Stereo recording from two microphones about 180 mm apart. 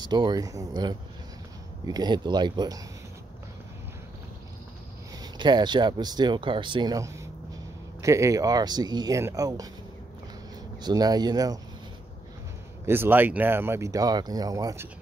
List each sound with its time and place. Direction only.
0.0 s speech: 20° right (ahead or behind)
5.2 s speech: 25° right (ahead or behind)
10.8 s speech: 20° right (ahead or behind)
12.8 s speech: 10° right (ahead or behind)